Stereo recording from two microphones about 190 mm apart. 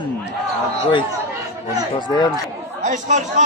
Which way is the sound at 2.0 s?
25° left (ahead or behind).